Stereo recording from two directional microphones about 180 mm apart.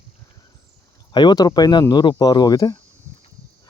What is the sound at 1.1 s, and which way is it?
Speech, 25° left (ahead or behind).